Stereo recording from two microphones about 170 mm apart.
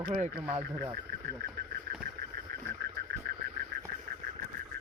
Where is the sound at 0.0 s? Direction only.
40° right (ahead or behind).